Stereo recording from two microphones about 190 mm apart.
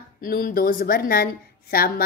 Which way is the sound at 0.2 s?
50° left (ahead or behind).